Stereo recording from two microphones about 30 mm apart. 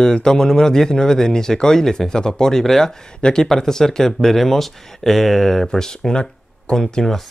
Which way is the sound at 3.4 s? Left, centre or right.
Centre.